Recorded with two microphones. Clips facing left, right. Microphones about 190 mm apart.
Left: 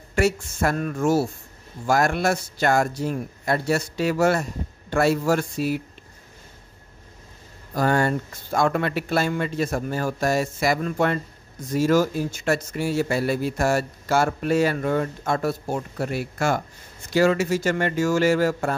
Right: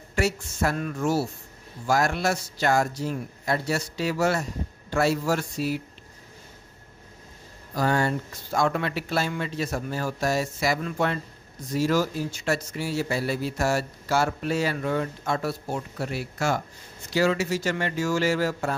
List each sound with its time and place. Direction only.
0.1 s a man's voice: 55° left (ahead or behind)
7.7 s a man's voice: 55° left (ahead or behind)